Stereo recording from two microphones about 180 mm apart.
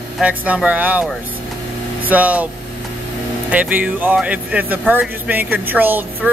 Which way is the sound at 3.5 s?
10° right (ahead or behind).